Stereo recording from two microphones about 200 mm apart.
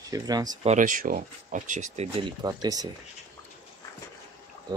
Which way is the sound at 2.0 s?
25° right (ahead or behind).